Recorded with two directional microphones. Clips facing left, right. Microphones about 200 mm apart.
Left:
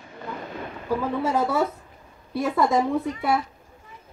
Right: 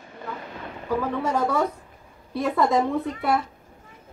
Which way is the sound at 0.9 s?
10° left (ahead or behind).